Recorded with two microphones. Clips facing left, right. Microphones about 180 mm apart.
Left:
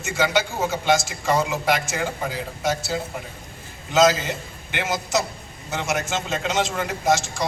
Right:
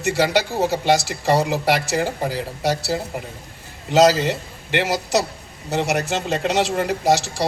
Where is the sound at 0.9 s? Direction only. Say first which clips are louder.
Right 1 dB; 70° right (ahead or behind).